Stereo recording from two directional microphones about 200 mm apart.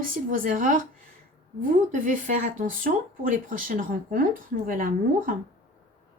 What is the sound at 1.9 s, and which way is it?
A woman's voice, 40° right (ahead or behind).